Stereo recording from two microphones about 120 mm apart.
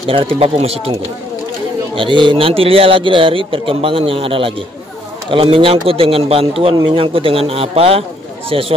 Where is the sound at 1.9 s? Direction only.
45° right (ahead or behind).